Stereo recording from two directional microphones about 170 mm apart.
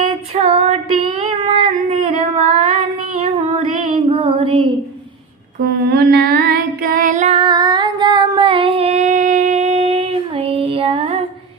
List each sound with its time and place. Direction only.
0.0 s female singing: 35° right (ahead or behind)
3.8 s female singing: 40° right (ahead or behind)
5.5 s child singing: 60° right (ahead or behind); by 7.3 s 45° right (ahead or behind)
7.3 s child singing: 25° right (ahead or behind)